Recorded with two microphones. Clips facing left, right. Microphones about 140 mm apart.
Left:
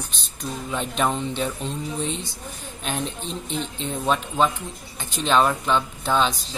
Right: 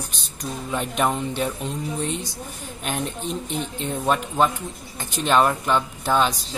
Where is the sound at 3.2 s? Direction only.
15° right (ahead or behind).